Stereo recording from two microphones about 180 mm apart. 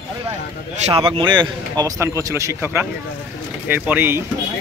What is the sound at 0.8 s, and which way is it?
Speech, 30° right (ahead or behind).